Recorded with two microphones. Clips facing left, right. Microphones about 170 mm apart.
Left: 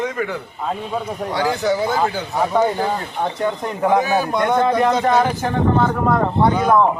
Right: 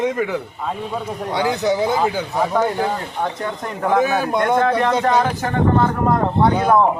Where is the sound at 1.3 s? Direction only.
20° right (ahead or behind).